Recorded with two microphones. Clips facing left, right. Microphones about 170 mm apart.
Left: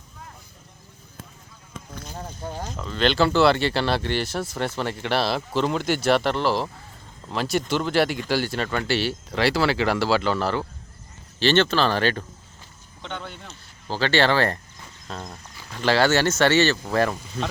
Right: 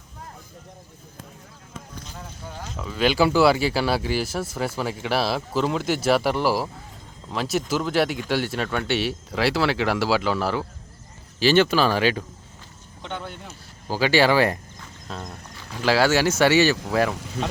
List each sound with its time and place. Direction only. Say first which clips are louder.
2.0 s boat: left 5 dB; 40° left (ahead or behind)
2.7 s speech: right 1 dB; 5° right (ahead or behind)
13.0 s a sound: right 1 dB; 5° right (ahead or behind)
13.4 s speech: right 2 dB; 10° right (ahead or behind)
15.0 s a sound: even; centre (ahead or behind)
15.7 s speech: even; 5° right (ahead or behind)
17.2 s speech: right 2 dB; 75° right (ahead or behind)